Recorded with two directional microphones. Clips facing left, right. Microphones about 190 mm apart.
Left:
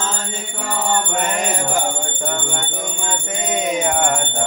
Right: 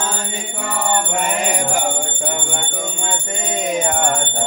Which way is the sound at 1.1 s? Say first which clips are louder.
Right 1 dB; 10° right (ahead or behind).